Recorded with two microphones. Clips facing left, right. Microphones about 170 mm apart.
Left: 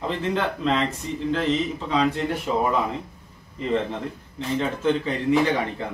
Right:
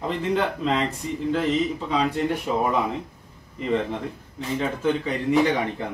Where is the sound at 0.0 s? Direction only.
10° right (ahead or behind).